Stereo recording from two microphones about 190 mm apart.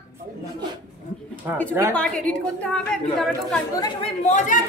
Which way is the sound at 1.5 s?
10° right (ahead or behind).